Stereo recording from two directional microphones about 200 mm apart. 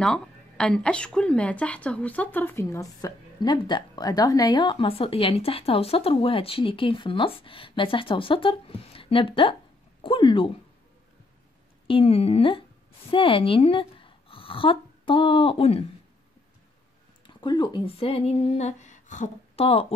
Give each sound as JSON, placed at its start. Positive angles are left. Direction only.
{"t": 0.0, "sound": "a woman's voice", "side_deg": 5}
{"t": 11.9, "sound": "a woman's voice", "side_deg": 30}
{"t": 17.3, "sound": "a woman's voice", "side_deg": 25}